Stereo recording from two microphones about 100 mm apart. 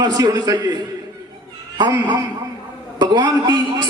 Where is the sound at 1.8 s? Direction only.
45° right (ahead or behind).